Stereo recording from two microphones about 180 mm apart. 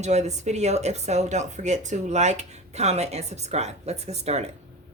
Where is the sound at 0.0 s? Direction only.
40° right (ahead or behind).